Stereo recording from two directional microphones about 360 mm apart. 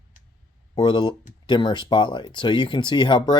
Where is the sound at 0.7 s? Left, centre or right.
Centre.